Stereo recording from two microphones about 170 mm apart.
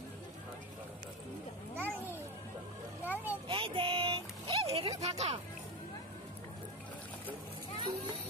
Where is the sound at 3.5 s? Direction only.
30° right (ahead or behind).